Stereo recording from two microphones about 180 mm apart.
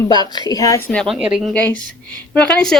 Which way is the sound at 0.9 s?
Centre (ahead or behind).